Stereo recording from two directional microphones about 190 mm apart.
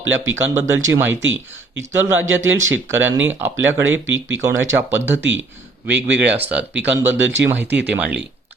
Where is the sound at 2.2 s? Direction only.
90° right.